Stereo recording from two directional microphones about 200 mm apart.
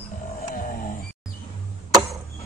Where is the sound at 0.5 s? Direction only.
40° left (ahead or behind).